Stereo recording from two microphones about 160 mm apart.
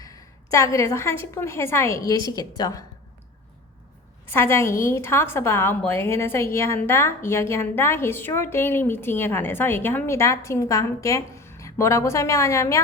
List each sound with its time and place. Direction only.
0.0 s a woman's voice: 20° left (ahead or behind)
4.3 s a woman's voice: 15° left (ahead or behind)